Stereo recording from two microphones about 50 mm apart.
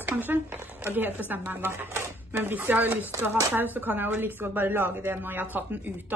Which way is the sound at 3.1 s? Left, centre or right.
Right.